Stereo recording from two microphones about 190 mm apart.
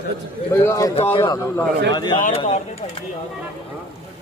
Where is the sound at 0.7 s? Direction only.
15° left (ahead or behind).